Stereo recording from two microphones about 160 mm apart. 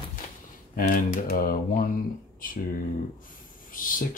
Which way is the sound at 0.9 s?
60° left (ahead or behind).